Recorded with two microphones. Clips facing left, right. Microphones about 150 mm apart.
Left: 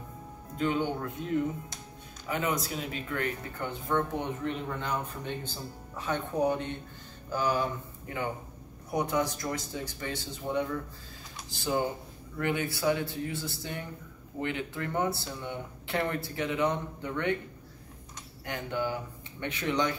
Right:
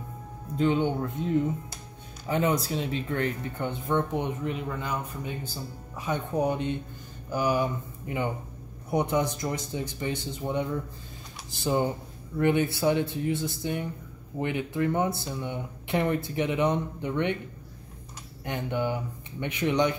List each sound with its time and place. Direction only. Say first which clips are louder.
0.6 s speech: right 4 dB; 25° right (ahead or behind)
2.2 s speech: right 5 dB; 30° right (ahead or behind)
3.6 s speech: right 2 dB; 20° right (ahead or behind)
4.5 s speech: right 1 dB; 5° right (ahead or behind)
18.4 s speech: right 3 dB; 20° right (ahead or behind)